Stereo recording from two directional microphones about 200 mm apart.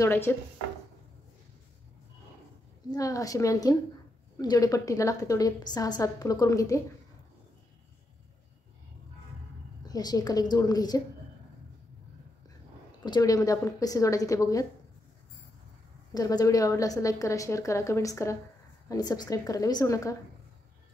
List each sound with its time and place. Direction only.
0.0 s a woman's voice: 10° left (ahead or behind)
2.9 s a woman's voice: 15° left (ahead or behind)
9.8 s a woman's voice: 20° left (ahead or behind)
13.0 s a woman's voice: 20° left (ahead or behind)
16.1 s a woman's voice: 20° left (ahead or behind)